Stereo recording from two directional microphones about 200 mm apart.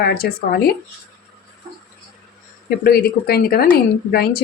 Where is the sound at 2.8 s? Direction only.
50° left (ahead or behind).